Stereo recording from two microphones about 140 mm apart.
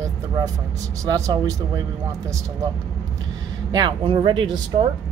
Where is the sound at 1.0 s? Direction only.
25° right (ahead or behind).